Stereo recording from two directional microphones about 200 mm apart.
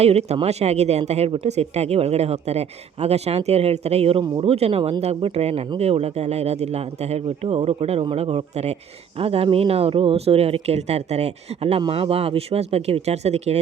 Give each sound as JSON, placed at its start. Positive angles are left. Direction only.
{"t": 0.0, "sound": "speech", "side_deg": -30}